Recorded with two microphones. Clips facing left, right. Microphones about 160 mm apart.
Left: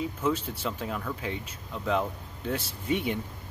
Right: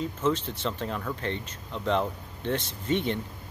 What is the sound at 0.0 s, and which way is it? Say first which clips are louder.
Speech: right 1 dB; 10° left (ahead or behind).